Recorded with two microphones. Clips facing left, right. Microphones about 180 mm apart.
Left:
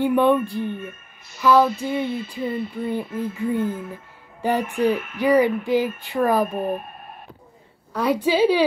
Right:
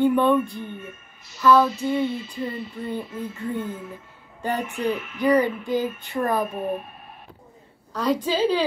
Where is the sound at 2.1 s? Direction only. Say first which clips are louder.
Left 3 dB; 55° left (ahead or behind).